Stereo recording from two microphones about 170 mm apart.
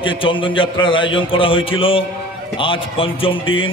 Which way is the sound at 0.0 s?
30° left (ahead or behind).